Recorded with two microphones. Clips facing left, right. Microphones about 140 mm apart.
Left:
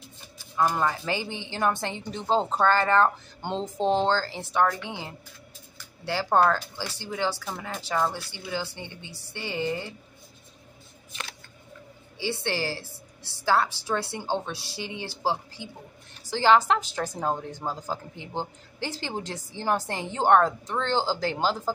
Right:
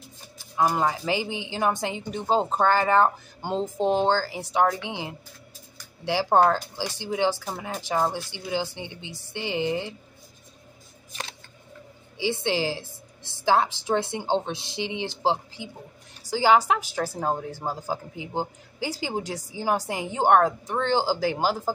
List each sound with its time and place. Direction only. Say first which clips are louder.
0.4 s a woman's voice: right 1 dB; 15° right (ahead or behind)
12.2 s a woman's voice: right 4 dB; 15° right (ahead or behind)